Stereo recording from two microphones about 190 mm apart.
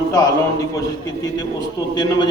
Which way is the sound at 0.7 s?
20° left (ahead or behind).